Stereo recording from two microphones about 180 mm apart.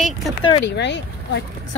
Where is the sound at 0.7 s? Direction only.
75° left (ahead or behind).